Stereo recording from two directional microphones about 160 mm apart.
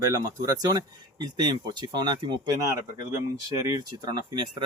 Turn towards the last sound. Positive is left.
turn(degrees=-30)  # may be behind; listen again after turning